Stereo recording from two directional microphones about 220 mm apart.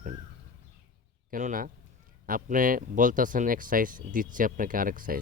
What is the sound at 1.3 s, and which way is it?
Speech, 35° right (ahead or behind).